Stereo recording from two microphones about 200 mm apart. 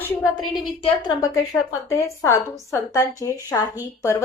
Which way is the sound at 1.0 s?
20° left (ahead or behind).